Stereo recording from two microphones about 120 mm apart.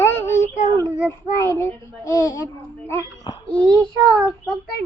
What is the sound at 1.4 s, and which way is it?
Speech, 25° left (ahead or behind).